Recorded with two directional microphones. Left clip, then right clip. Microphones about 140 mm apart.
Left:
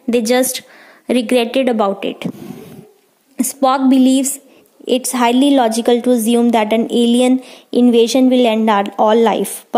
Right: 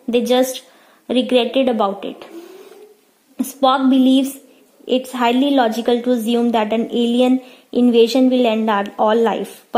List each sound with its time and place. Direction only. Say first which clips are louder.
0.1 s a woman's voice: left 1 dB; 35° left (ahead or behind)
3.3 s speech: left 1 dB; 25° left (ahead or behind)